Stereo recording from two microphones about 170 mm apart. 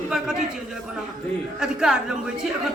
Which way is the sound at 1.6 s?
5° right (ahead or behind).